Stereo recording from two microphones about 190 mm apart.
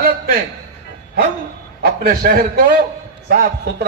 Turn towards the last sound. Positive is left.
turn(degrees=-55)  # may be behind; listen again after turning